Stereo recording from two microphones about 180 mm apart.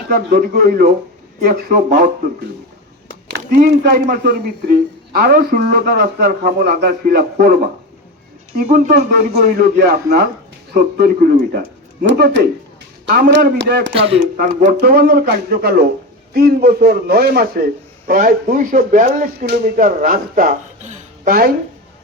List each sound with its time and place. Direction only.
0.1 s a man's voice: 60° right (ahead or behind)
3.3 s a man's voice: 60° right (ahead or behind)
9.1 s a man's voice: 60° right (ahead or behind)
12.0 s a man's voice: 70° right (ahead or behind)
13.9 s speech: 30° right (ahead or behind)
14.6 s a man's voice: 55° right (ahead or behind)